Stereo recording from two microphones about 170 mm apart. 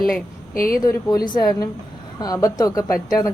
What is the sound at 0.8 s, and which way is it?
A woman's voice, 20° left (ahead or behind).